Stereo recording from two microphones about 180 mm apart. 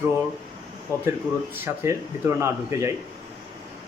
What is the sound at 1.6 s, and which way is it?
Speech, 15° right (ahead or behind).